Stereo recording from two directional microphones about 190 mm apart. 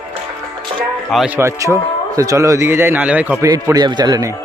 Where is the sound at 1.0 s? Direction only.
Centre (ahead or behind).